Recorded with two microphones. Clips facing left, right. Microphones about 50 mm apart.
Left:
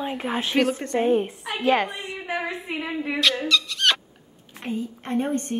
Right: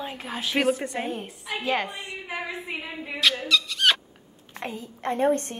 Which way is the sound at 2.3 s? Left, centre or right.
Left.